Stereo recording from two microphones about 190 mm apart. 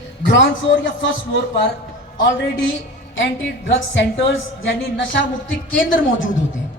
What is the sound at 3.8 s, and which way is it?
Speech, 70° left (ahead or behind).